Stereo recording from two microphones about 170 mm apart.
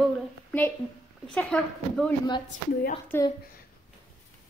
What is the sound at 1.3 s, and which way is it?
Speech, 5° left (ahead or behind).